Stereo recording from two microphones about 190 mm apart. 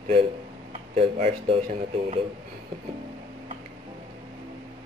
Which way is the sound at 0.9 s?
30° right (ahead or behind).